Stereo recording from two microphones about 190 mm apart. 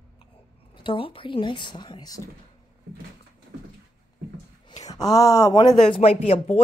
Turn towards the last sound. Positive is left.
turn(degrees=30)  # may be behind; listen again after turning